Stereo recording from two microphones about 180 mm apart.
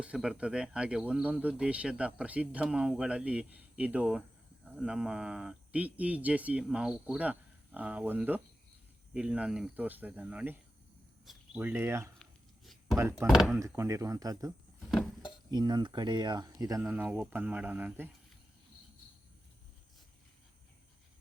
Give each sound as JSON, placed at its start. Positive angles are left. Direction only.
{"t": 0.0, "sound": "speech", "side_deg": -5}
{"t": 12.2, "sound": "a sound", "side_deg": 0}
{"t": 13.0, "sound": "speech", "side_deg": -15}
{"t": 13.2, "sound": "speech", "side_deg": 0}
{"t": 13.5, "sound": "speech", "side_deg": -15}
{"t": 14.8, "sound": "a sound", "side_deg": 0}
{"t": 15.4, "sound": "speech", "side_deg": -25}